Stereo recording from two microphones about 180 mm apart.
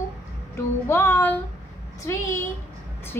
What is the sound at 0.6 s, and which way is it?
Speech, 15° left (ahead or behind).